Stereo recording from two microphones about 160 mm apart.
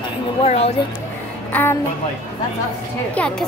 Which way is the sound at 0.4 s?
40° left (ahead or behind).